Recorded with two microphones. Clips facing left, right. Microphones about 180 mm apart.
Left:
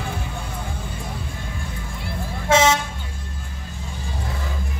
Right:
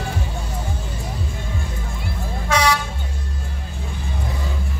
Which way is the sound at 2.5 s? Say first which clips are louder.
Left 3 dB; 25° left (ahead or behind).